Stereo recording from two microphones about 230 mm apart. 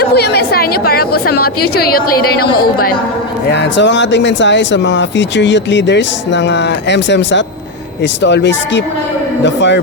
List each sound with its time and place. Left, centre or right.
0.0 s a woman's voice: left